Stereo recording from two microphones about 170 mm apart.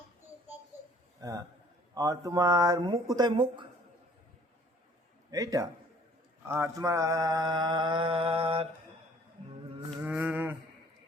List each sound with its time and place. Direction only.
1.2 s mantra: 20° right (ahead or behind)
5.3 s mantra: 20° right (ahead or behind); by 8.6 s 35° right (ahead or behind)
10.0 s a sound: 10° right (ahead or behind)